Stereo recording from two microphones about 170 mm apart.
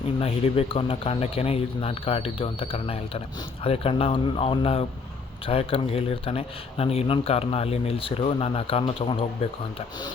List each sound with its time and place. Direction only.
0.2 s speech: 35° left (ahead or behind)